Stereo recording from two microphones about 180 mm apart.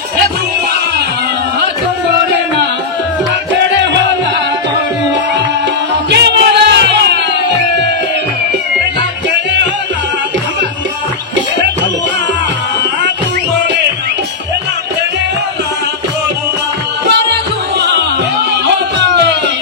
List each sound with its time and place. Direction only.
6.0 s music: 70° right (ahead or behind)
9.3 s music: 75° right (ahead or behind)
17.1 s music: 70° right (ahead or behind)
18.9 s music: 70° right (ahead or behind)